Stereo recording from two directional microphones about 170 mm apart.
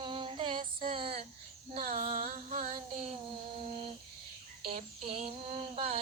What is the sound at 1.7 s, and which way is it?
Child singing, 50° right (ahead or behind).